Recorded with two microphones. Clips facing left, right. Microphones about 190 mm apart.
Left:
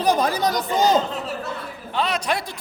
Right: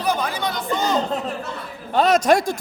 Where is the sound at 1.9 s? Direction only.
45° right (ahead or behind).